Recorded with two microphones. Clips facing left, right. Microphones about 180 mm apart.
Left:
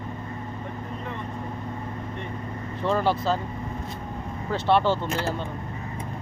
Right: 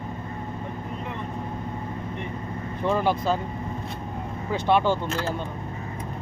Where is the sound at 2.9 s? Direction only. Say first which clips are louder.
Even; 15° right (ahead or behind).